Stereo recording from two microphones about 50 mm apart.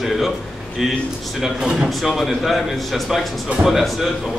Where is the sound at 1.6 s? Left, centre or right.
Centre.